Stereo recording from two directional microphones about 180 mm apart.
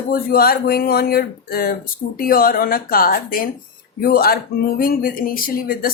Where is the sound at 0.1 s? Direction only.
55° left (ahead or behind).